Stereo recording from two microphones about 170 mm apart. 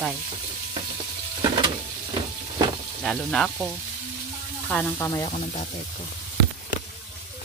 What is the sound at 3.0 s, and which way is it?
Speech, centre (ahead or behind).